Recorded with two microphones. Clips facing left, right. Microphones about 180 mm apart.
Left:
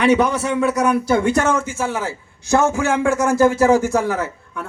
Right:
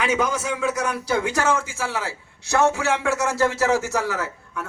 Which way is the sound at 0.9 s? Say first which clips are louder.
Left 7 dB; 55° left (ahead or behind).